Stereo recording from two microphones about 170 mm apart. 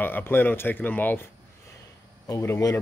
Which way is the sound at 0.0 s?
10° left (ahead or behind).